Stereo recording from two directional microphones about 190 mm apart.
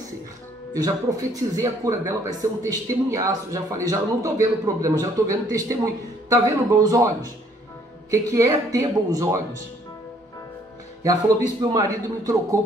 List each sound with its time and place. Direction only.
0.7 s speech: 20° right (ahead or behind)
11.7 s speech: 20° right (ahead or behind)